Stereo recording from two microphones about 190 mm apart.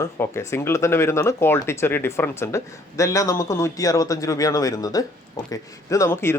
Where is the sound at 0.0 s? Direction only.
15° left (ahead or behind).